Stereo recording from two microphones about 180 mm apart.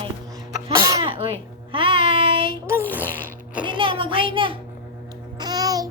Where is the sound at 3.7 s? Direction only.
30° right (ahead or behind).